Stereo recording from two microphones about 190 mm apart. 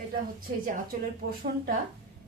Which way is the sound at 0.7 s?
45° right (ahead or behind).